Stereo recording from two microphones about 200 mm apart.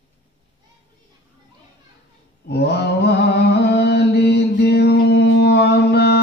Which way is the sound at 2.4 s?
55° left (ahead or behind).